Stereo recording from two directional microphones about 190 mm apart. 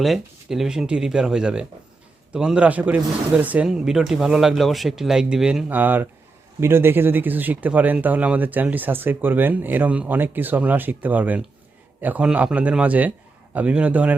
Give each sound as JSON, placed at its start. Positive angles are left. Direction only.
{"t": 0.0, "sound": "a man's voice", "side_deg": 0}